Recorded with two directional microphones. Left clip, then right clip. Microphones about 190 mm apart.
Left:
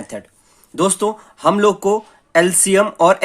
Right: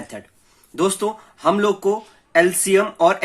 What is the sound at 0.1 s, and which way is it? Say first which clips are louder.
Speech: left 5 dB; 40° left (ahead or behind).